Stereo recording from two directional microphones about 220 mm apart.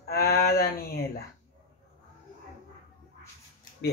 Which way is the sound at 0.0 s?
45° left (ahead or behind).